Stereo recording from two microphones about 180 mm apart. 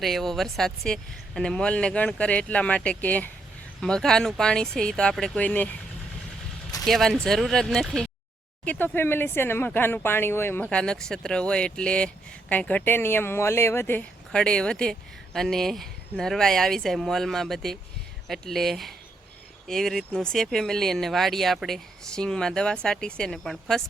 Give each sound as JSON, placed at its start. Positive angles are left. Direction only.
{"t": 0.0, "sound": "speech", "side_deg": 0}
{"t": 6.8, "sound": "speech", "side_deg": 0}